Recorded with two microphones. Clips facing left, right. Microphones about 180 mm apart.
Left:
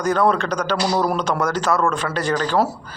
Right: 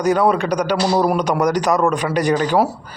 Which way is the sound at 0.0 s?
10° right (ahead or behind).